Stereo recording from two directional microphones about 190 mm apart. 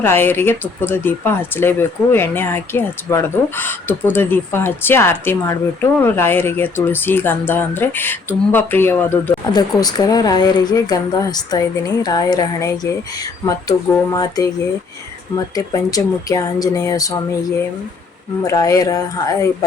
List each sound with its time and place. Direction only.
0.0 s speech: 10° left (ahead or behind)
9.5 s speech: 20° left (ahead or behind)
15.5 s speech: 20° left (ahead or behind)
18.4 s speech: 15° left (ahead or behind)